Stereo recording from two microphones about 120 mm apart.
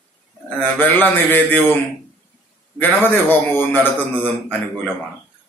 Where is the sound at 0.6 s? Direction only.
15° left (ahead or behind).